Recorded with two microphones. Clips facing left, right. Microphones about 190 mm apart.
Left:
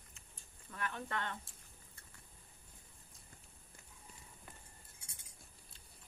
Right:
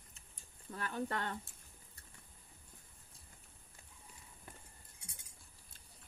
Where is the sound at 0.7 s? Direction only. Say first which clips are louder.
Right 3 dB; 35° right (ahead or behind).